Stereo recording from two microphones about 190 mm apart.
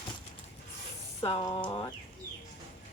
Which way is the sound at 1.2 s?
25° left (ahead or behind).